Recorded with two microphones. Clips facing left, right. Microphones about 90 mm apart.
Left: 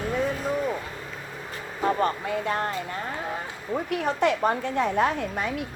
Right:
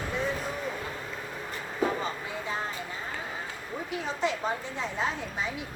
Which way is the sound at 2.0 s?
65° left (ahead or behind).